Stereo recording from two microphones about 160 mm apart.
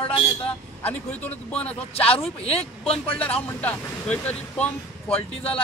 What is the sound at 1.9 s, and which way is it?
Speech, 35° left (ahead or behind).